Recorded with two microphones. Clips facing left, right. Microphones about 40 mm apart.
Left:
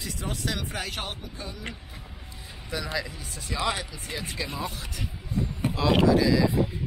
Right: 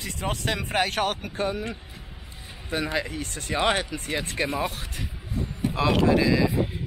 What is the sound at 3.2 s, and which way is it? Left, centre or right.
Speech, right.